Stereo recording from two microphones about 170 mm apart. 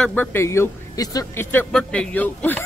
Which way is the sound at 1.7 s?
5° left (ahead or behind).